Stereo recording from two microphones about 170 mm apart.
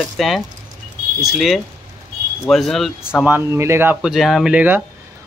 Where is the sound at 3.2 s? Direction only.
15° right (ahead or behind).